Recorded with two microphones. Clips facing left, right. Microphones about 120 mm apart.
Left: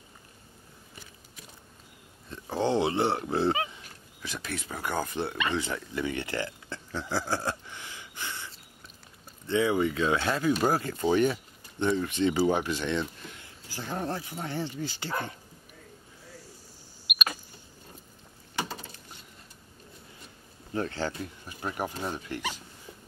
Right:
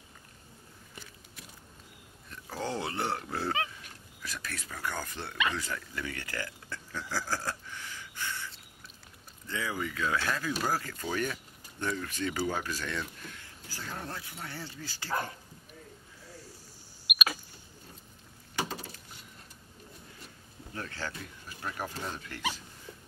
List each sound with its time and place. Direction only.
2.2 s speech: 25° left (ahead or behind)
3.5 s a sound: 5° left (ahead or behind)
4.2 s speech: 25° left (ahead or behind)
9.5 s speech: 25° left (ahead or behind)
17.0 s rodents: centre (ahead or behind)
20.7 s speech: 25° left (ahead or behind)